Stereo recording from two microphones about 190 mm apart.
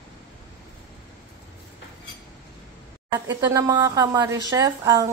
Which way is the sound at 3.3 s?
15° right (ahead or behind).